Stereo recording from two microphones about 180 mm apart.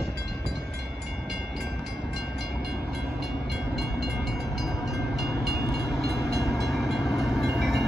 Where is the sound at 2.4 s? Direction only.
60° right (ahead or behind).